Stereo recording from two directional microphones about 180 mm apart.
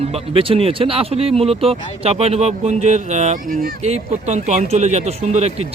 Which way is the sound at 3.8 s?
40° right (ahead or behind).